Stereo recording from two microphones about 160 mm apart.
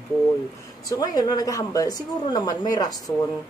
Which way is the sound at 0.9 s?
25° left (ahead or behind).